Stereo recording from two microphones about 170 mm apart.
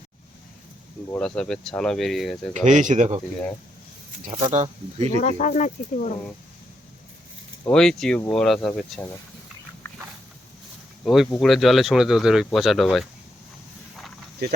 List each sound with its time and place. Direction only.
1.2 s speech: 5° left (ahead or behind)
2.5 s speech: 45° right (ahead or behind)
4.2 s speech: 45° right (ahead or behind)
5.2 s speech: 50° left (ahead or behind)
7.7 s speech: 5° left (ahead or behind)
11.0 s speech: centre (ahead or behind)
14.4 s speech: 70° right (ahead or behind)